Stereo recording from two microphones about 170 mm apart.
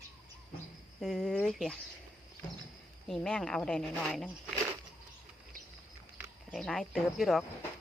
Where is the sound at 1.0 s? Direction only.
Centre (ahead or behind).